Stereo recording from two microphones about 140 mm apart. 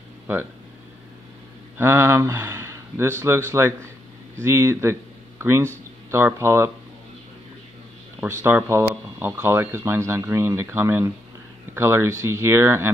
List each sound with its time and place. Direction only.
0.3 s speech: 15° right (ahead or behind)
1.8 s speech: 15° right (ahead or behind)
8.2 s speech: 15° right (ahead or behind)